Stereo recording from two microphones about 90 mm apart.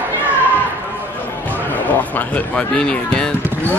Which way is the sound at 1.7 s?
20° left (ahead or behind).